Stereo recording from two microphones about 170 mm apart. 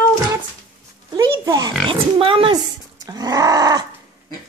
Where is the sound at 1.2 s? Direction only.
25° right (ahead or behind).